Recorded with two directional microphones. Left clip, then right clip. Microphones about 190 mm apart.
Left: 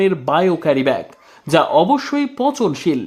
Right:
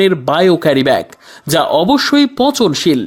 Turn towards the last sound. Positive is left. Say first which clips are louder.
# right 6 dB
turn(degrees=-20)  # may be behind; listen again after turning